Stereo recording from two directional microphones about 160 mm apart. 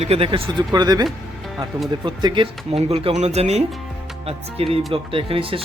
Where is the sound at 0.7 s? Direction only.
25° right (ahead or behind).